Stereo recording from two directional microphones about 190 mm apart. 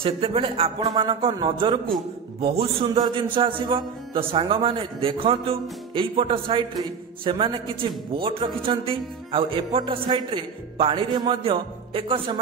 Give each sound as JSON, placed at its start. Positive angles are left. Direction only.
{"t": 0.0, "sound": "a man's voice", "side_deg": -30}